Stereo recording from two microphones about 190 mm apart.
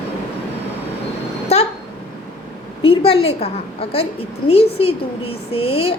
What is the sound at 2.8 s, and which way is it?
A woman's voice, 30° left (ahead or behind).